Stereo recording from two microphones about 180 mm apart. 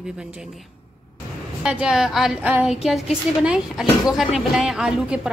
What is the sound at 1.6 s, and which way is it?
A woman's voice, 5° right (ahead or behind).